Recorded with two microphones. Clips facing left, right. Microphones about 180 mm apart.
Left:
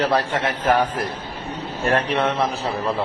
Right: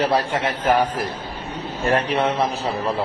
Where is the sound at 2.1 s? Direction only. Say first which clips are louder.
Right 1 dB; 15° right (ahead or behind).